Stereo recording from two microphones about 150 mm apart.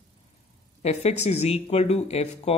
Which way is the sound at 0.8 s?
50° left (ahead or behind).